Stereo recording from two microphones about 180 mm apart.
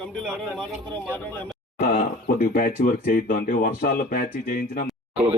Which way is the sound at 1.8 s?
50° left (ahead or behind).